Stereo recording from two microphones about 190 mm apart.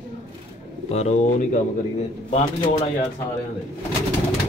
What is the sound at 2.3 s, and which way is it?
Speech, 30° left (ahead or behind).